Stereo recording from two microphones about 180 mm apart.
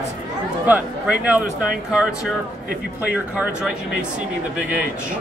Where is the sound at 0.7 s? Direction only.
10° right (ahead or behind).